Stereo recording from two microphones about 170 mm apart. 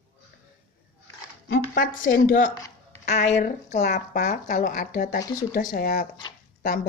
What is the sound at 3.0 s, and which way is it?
Speech, 40° left (ahead or behind).